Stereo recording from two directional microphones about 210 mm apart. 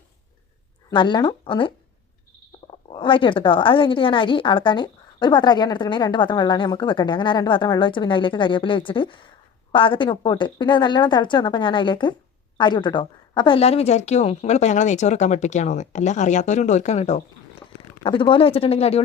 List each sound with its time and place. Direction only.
0.9 s a woman's voice: 20° left (ahead or behind)